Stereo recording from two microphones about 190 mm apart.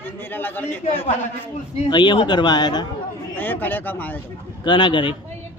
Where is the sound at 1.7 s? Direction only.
30° left (ahead or behind).